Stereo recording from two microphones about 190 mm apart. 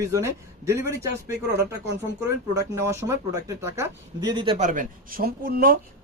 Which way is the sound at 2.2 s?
15° right (ahead or behind).